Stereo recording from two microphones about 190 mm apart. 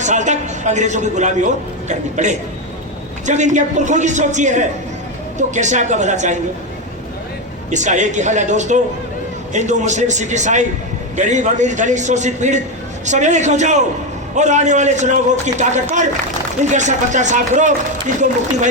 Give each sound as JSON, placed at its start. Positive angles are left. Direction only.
{"t": 0.0, "sound": "a man's voice", "side_deg": -40}
{"t": 7.7, "sound": "a man's voice", "side_deg": -40}